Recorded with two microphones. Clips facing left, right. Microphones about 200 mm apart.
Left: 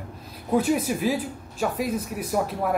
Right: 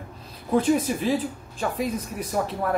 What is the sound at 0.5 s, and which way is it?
Speech, 10° left (ahead or behind).